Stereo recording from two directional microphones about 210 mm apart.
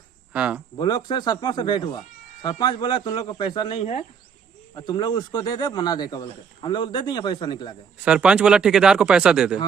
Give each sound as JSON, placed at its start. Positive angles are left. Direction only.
{"t": 0.3, "sound": "speech", "side_deg": -5}
{"t": 0.8, "sound": "speech", "side_deg": 20}
{"t": 8.0, "sound": "speech", "side_deg": -5}